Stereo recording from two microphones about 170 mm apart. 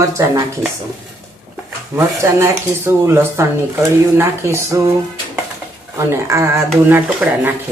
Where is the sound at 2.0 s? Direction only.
15° right (ahead or behind).